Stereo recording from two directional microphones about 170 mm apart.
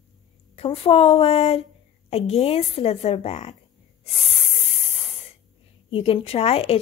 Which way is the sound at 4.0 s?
35° left (ahead or behind).